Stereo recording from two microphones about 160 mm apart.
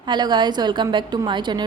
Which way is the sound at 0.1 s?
30° right (ahead or behind).